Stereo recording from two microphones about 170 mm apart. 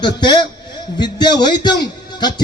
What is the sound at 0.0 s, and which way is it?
A man's voice, 25° left (ahead or behind).